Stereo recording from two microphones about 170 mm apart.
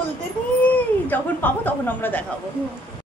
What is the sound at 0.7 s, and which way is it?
Speech, 10° left (ahead or behind).